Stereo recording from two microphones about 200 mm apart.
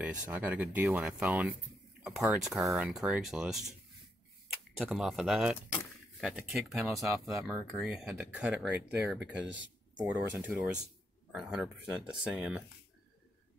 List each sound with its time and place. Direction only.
0.0 s speech: 5° right (ahead or behind)
4.7 s speech: centre (ahead or behind)
9.3 s speech: 65° right (ahead or behind)
10.1 s speech: 5° right (ahead or behind)